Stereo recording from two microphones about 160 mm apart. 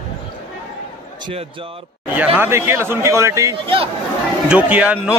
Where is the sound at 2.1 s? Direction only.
10° right (ahead or behind).